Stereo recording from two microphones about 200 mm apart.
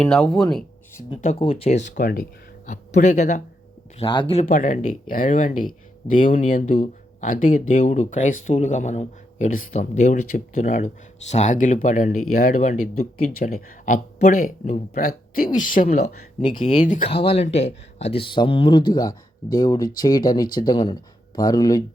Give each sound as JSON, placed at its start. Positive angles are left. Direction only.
{"t": 0.0, "sound": "speech", "side_deg": 5}
{"t": 1.2, "sound": "speech", "side_deg": 30}
{"t": 3.9, "sound": "speech", "side_deg": 25}
{"t": 4.4, "sound": "speech", "side_deg": 40}
{"t": 6.1, "sound": "speech", "side_deg": 30}
{"t": 6.7, "sound": "speech", "side_deg": 40}